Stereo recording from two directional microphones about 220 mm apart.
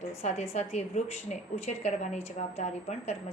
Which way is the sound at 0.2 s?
30° left (ahead or behind).